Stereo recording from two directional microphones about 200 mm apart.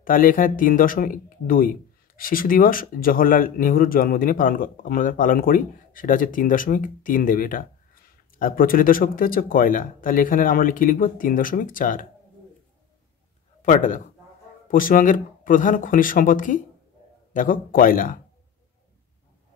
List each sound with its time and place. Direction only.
0.0 s speech: 45° left (ahead or behind)
13.6 s a man's voice: 40° left (ahead or behind)